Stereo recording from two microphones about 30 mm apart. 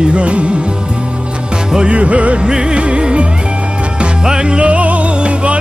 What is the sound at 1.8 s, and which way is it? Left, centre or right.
Music, right.